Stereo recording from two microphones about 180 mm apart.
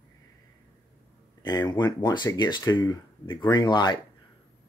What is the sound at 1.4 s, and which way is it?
Speech, 25° left (ahead or behind).